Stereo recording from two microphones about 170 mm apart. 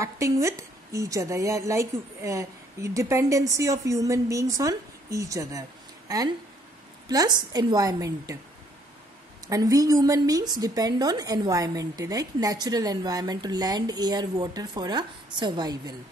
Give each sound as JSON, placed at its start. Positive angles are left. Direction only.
{"t": 0.0, "sound": "a woman's voice", "side_deg": -15}
{"t": 9.5, "sound": "a woman's voice", "side_deg": -20}